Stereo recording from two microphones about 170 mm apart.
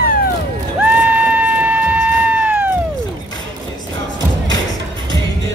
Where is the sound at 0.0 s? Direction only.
60° left (ahead or behind).